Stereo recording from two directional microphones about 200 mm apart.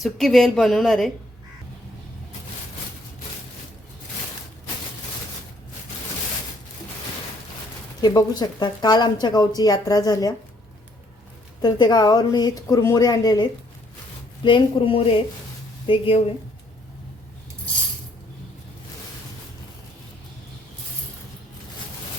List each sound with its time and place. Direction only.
0.0 s speech: centre (ahead or behind)
8.0 s a woman's voice: 20° left (ahead or behind)
11.6 s a woman's voice: 20° left (ahead or behind)